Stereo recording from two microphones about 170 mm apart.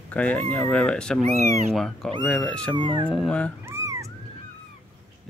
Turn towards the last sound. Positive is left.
turn(degrees=-15)  # may be behind; listen again after turning